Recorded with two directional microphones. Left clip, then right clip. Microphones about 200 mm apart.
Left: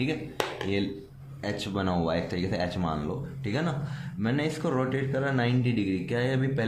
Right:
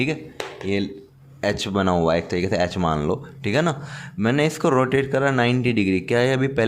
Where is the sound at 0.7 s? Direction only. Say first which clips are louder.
Right 5 dB; 35° right (ahead or behind).